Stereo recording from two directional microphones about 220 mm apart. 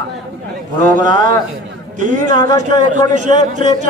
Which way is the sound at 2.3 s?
20° left (ahead or behind).